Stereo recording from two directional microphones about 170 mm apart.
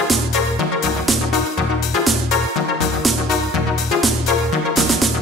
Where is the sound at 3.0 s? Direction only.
Centre (ahead or behind).